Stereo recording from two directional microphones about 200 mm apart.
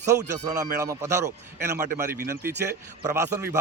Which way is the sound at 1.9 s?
45° right (ahead or behind).